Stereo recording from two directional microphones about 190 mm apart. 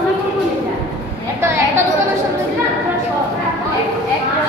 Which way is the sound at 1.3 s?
15° right (ahead or behind).